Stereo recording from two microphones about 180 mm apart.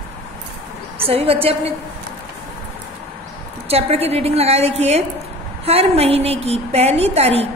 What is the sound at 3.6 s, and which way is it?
A woman's voice, 35° right (ahead or behind).